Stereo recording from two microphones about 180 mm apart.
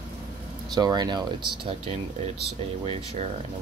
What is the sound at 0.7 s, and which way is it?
Speech, 25° right (ahead or behind).